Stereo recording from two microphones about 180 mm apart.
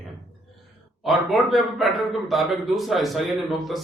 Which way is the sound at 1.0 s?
Centre (ahead or behind).